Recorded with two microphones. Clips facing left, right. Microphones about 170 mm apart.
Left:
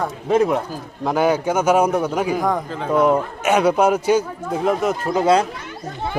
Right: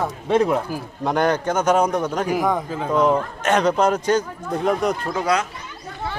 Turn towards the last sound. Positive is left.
turn(degrees=30)  # may be behind; listen again after turning